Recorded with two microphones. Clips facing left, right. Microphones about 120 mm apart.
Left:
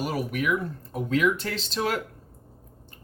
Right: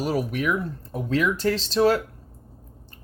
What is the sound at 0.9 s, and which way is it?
Speech, 35° right (ahead or behind).